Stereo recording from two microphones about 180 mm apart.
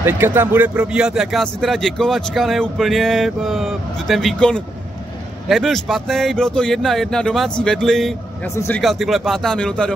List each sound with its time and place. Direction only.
0.0 s speech: 10° right (ahead or behind)
8.5 s speech: 15° left (ahead or behind)
8.8 s speech: centre (ahead or behind)